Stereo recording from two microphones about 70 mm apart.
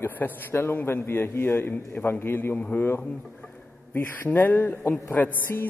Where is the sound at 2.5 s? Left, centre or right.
Left.